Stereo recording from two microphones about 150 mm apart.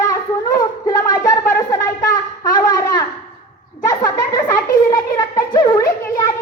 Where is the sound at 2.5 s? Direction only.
25° left (ahead or behind).